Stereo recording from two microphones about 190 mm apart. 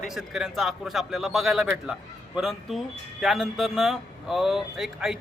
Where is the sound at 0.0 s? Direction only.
Centre (ahead or behind).